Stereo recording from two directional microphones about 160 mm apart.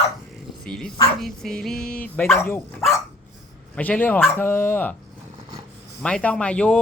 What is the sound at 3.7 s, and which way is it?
Speech, 10° left (ahead or behind).